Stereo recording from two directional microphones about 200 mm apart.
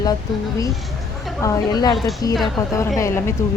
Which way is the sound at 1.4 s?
15° left (ahead or behind).